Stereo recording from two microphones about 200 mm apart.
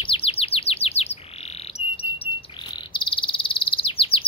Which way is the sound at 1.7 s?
30° left (ahead or behind).